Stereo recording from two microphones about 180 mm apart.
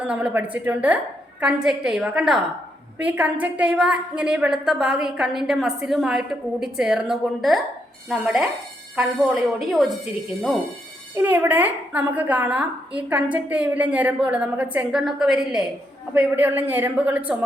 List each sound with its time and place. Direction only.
0.0 s a woman's voice: 5° right (ahead or behind)
11.1 s a woman's voice: 10° right (ahead or behind)